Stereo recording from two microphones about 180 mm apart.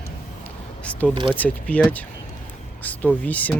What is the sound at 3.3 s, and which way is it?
Speech, 10° left (ahead or behind).